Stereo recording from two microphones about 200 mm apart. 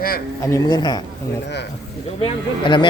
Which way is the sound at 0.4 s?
15° left (ahead or behind).